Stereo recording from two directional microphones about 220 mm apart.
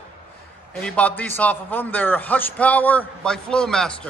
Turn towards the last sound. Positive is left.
turn(degrees=5)  # may be behind; listen again after turning